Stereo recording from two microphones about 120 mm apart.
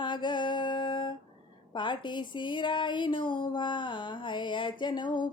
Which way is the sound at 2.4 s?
40° left (ahead or behind).